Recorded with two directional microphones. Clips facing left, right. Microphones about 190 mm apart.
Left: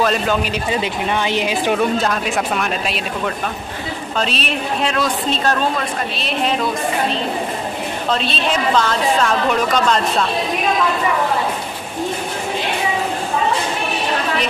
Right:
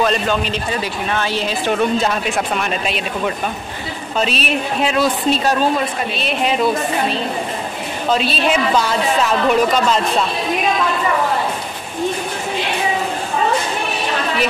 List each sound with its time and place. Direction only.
0.0 s speech: 5° left (ahead or behind)
1.8 s a woman's voice: centre (ahead or behind)
4.2 s a woman's voice: 5° right (ahead or behind)